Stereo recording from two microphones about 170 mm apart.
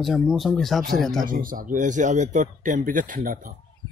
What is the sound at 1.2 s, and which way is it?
A man's voice, 55° right (ahead or behind).